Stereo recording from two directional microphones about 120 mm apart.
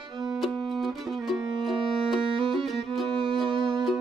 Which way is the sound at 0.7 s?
Centre (ahead or behind).